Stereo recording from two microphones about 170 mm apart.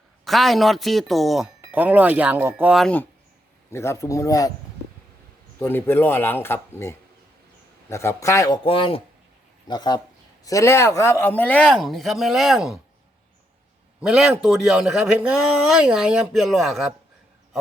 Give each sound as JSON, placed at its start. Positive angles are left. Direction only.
{"t": 0.3, "sound": "a man's voice", "side_deg": 0}
{"t": 2.7, "sound": "a man's voice", "side_deg": 5}
{"t": 5.5, "sound": "a man's voice", "side_deg": 15}
{"t": 14.0, "sound": "a man's voice", "side_deg": -5}